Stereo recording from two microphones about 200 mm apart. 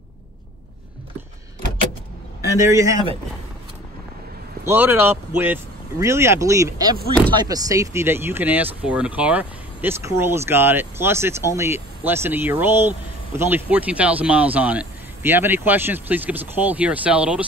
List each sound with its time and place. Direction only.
2.5 s speech: 15° right (ahead or behind)
4.6 s speech: 10° right (ahead or behind)